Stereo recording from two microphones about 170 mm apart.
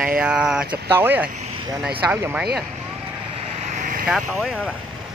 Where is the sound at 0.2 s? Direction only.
5° right (ahead or behind).